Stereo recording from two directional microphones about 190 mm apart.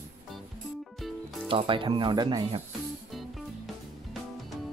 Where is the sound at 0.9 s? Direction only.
Centre (ahead or behind).